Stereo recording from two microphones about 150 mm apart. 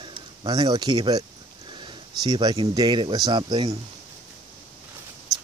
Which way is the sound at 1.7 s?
30° right (ahead or behind).